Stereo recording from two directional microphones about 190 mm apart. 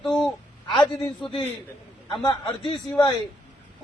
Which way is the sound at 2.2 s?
25° left (ahead or behind).